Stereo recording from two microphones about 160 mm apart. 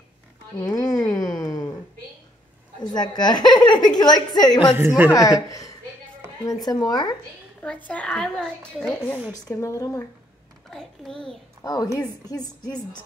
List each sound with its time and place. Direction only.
0.6 s speech: 25° left (ahead or behind)
1.3 s a sound: 20° left (ahead or behind)
2.8 s a woman's voice: 25° left (ahead or behind)
4.7 s a woman's voice: 10° right (ahead or behind)
5.5 s a woman's voice: 20° left (ahead or behind)
7.6 s speech: 10° left (ahead or behind)
9.3 s a woman's voice: 20° left (ahead or behind)
10.7 s a child's voice: 5° left (ahead or behind)
11.6 s a woman's voice: 25° left (ahead or behind)